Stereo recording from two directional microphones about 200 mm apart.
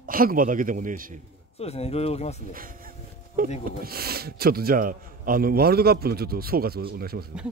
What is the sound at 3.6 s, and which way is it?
A man's voice, 50° right (ahead or behind).